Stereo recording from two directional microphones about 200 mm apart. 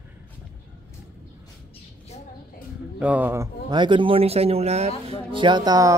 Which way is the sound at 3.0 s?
10° right (ahead or behind).